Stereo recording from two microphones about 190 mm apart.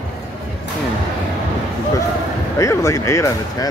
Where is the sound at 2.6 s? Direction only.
15° left (ahead or behind).